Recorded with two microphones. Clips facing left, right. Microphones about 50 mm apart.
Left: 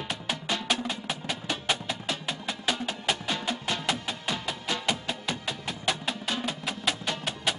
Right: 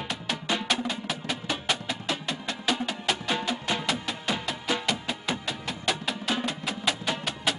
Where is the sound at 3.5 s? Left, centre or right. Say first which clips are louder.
Right 2 dB; centre.